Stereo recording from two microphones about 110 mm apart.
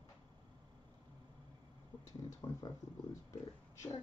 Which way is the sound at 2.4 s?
35° left (ahead or behind).